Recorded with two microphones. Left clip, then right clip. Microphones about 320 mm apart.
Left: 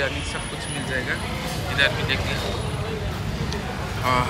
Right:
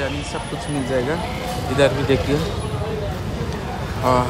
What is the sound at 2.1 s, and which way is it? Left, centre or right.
Speech, centre.